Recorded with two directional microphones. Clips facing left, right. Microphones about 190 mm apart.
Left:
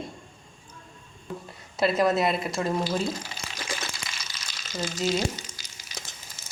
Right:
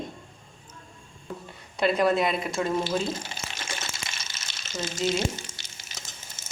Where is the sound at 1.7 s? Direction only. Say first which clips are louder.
Even; centre (ahead or behind).